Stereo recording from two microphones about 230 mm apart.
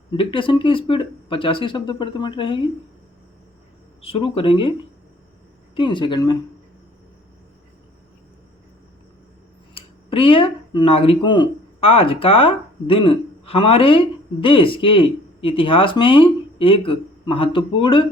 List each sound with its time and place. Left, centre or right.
0.2 s speech: left
4.0 s speech: left
5.7 s speech: left
9.7 s speech: left